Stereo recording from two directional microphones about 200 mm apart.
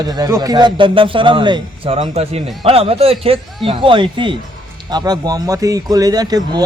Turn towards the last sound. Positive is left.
turn(degrees=-20)  # may be behind; listen again after turning